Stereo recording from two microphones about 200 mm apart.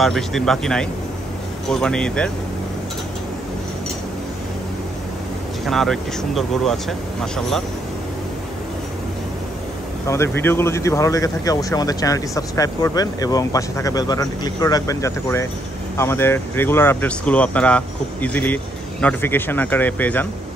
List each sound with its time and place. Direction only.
0.0 s speech: centre (ahead or behind)
5.7 s speech: centre (ahead or behind)
10.0 s speech: 15° left (ahead or behind)